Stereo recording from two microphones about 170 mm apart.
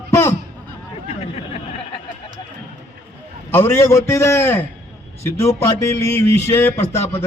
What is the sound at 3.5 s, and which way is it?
A man's voice, 15° left (ahead or behind).